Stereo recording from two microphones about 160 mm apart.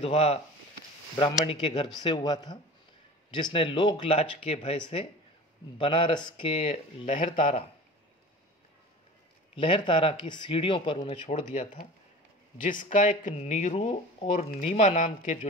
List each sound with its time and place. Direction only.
0.0 s speech: 40° left (ahead or behind)
7.3 s speech: 55° left (ahead or behind)
9.6 s speech: 30° left (ahead or behind)
12.5 s speech: 55° left (ahead or behind)